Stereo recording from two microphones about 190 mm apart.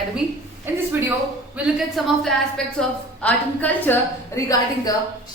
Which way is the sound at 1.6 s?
Centre (ahead or behind).